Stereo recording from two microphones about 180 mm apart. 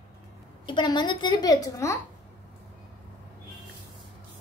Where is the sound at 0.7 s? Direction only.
25° left (ahead or behind).